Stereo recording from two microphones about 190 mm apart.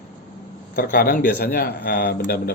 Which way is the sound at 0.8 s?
55° left (ahead or behind).